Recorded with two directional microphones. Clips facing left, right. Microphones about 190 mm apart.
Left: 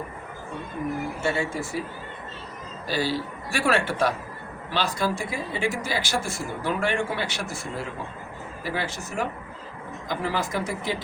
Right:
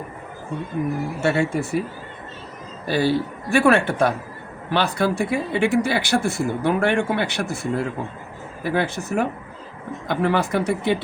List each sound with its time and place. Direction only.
1.2 s speech: 65° right (ahead or behind)
2.8 s speech: 55° right (ahead or behind)